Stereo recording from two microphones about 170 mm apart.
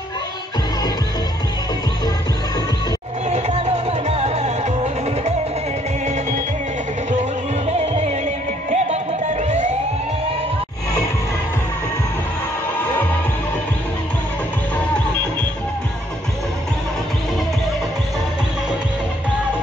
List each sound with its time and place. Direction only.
3.3 s music: 40° right (ahead or behind)
7.8 s music: 40° right (ahead or behind)